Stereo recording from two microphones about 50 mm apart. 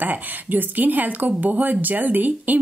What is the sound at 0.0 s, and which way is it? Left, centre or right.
Speech, right.